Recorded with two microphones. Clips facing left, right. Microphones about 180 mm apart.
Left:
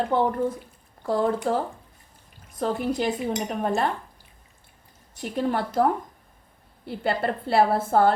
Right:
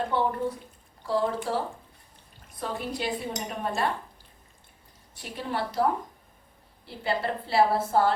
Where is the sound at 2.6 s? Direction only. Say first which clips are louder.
Left 7 dB; 45° left (ahead or behind).